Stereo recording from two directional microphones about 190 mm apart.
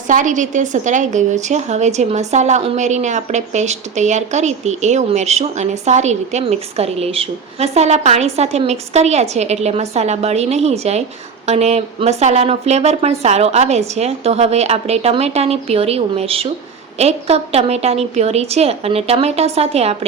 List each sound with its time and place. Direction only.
0.1 s a woman's voice: 40° right (ahead or behind)